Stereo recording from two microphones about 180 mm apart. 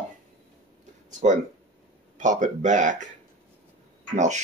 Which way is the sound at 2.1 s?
45° right (ahead or behind).